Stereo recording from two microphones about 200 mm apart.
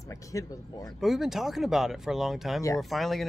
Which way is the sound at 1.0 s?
Centre (ahead or behind).